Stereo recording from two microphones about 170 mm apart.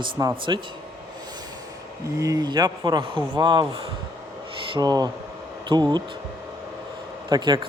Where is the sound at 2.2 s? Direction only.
20° right (ahead or behind).